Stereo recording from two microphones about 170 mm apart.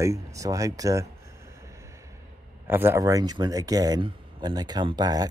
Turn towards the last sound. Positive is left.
turn(degrees=-20)  # may be behind; listen again after turning